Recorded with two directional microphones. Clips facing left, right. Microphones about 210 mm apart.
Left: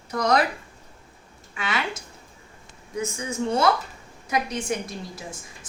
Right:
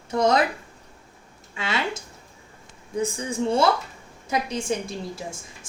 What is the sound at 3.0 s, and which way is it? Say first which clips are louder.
A woman's voice: right 2 dB; 30° right (ahead or behind).